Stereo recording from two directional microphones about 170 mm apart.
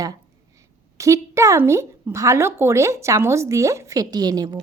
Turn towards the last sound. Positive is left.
turn(degrees=-25)  # may be behind; listen again after turning